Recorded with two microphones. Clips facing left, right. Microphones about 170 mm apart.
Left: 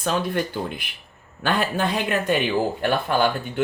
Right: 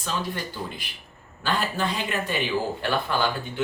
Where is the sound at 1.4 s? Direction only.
55° left (ahead or behind).